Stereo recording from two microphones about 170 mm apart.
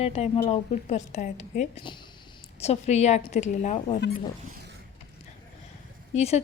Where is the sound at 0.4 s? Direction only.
45° left (ahead or behind).